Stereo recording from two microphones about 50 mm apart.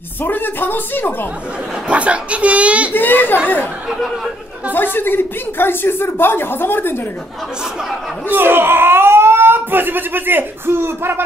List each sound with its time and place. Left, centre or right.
0.2 s a woman's voice: left
1.9 s speech: right
2.9 s speech: left
4.7 s a woman's voice: left
8.3 s speech: right